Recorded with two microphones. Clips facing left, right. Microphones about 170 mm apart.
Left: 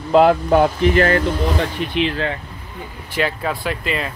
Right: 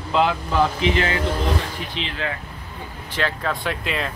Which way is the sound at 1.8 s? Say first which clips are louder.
Left 8 dB; 65° left (ahead or behind).